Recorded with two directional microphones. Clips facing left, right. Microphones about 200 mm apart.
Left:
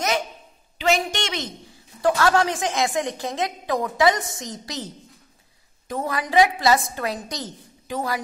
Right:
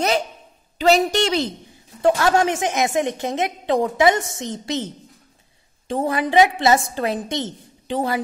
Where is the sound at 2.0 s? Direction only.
25° right (ahead or behind).